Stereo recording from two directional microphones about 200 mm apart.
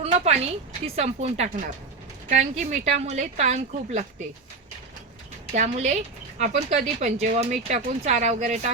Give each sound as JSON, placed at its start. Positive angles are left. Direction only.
{"t": 0.0, "sound": "a sound", "side_deg": -30}
{"t": 0.9, "sound": "speech", "side_deg": -35}
{"t": 5.5, "sound": "speech", "side_deg": -35}